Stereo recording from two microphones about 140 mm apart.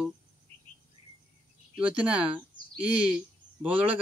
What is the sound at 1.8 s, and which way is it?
Speech, 10° right (ahead or behind).